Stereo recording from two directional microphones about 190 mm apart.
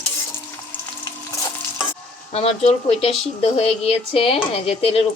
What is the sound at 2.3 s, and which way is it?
Speech, 30° left (ahead or behind).